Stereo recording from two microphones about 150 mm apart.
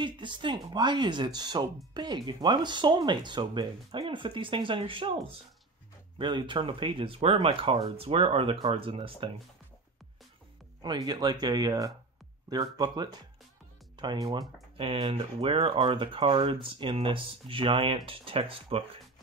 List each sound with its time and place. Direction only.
0.0 s speech: 30° right (ahead or behind)
10.8 s speech: 25° right (ahead or behind)